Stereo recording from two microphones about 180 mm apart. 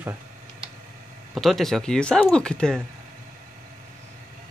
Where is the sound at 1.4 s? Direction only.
Centre (ahead or behind).